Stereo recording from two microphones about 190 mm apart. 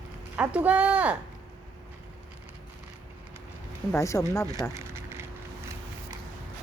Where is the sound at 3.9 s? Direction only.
15° left (ahead or behind).